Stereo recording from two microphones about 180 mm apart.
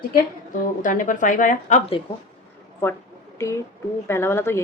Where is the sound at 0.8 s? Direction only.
45° left (ahead or behind).